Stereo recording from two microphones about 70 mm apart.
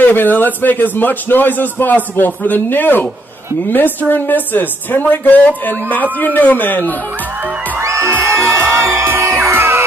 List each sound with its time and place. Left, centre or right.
0.0 s a man's voice: left
7.8 s music: right